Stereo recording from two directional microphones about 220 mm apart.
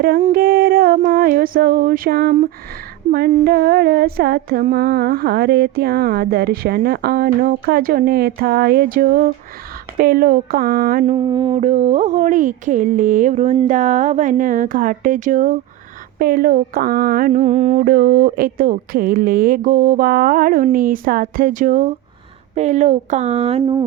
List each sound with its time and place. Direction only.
0.0 s a sound: 40° right (ahead or behind)
3.1 s speech: 40° right (ahead or behind)
3.4 s humming: 45° right (ahead or behind)
10.0 s speech: 40° right (ahead or behind)
11.0 s speech: 25° right (ahead or behind)